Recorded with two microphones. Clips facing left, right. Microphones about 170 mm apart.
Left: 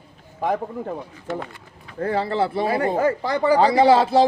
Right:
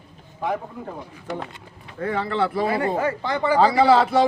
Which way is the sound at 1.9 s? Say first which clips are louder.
Left 2 dB; 35° left (ahead or behind).